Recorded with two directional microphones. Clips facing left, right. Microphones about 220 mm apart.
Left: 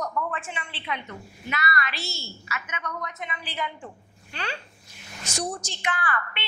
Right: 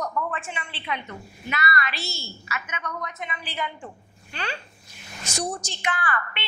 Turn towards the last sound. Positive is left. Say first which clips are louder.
# right 1 dB
turn(degrees=-20)  # may be behind; listen again after turning